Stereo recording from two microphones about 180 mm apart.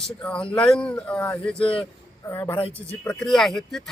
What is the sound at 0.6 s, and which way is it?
Speech, 5° left (ahead or behind).